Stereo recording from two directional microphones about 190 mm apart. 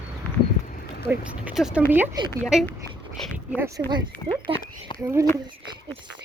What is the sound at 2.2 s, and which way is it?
Speech, 25° right (ahead or behind).